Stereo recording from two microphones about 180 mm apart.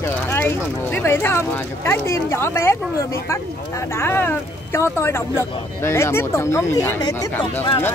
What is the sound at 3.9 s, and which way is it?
Speech, 15° left (ahead or behind).